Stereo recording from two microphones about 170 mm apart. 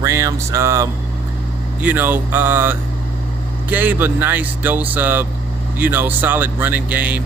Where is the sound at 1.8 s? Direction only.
10° right (ahead or behind).